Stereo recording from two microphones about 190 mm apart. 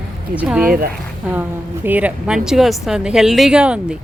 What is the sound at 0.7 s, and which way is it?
Speech, 50° right (ahead or behind).